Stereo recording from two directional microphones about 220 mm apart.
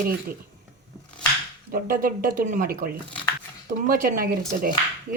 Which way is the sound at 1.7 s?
40° right (ahead or behind).